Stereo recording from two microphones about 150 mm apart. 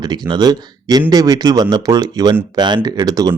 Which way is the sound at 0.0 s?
30° right (ahead or behind).